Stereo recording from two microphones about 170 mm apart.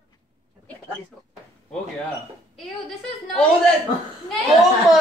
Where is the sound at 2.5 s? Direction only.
Centre (ahead or behind).